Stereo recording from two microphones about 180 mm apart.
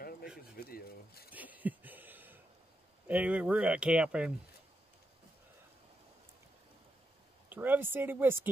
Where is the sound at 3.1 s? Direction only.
10° right (ahead or behind).